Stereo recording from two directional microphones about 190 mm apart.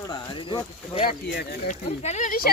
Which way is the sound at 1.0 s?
55° left (ahead or behind).